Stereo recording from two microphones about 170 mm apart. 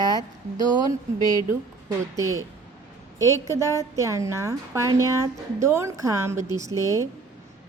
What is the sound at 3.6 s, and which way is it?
A woman's voice, 20° right (ahead or behind).